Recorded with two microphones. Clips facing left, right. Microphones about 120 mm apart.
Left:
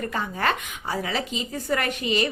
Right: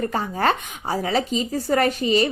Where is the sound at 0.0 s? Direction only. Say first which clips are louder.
Right 4 dB; 35° right (ahead or behind).